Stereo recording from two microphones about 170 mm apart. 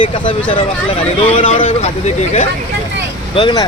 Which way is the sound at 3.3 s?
25° left (ahead or behind).